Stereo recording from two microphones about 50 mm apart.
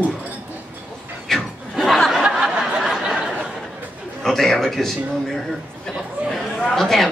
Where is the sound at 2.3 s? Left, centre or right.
Centre.